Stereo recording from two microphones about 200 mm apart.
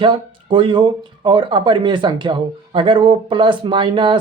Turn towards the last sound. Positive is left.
turn(degrees=-25)  # may be behind; listen again after turning